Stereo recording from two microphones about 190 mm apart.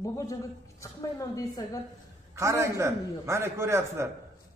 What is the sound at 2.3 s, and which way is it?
A man's voice, 15° right (ahead or behind).